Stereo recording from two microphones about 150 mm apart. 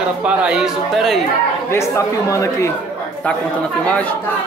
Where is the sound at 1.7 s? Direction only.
20° left (ahead or behind).